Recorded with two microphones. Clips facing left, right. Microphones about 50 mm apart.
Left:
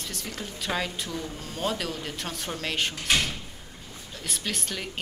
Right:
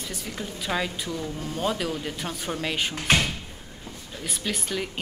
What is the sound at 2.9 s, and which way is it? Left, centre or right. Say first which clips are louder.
Speech: right 5 dB; right.